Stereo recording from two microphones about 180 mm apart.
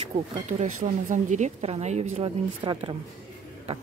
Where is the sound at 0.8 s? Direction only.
45° right (ahead or behind); by 3.0 s 25° right (ahead or behind).